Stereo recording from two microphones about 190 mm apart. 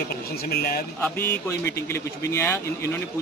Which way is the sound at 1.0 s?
10° left (ahead or behind).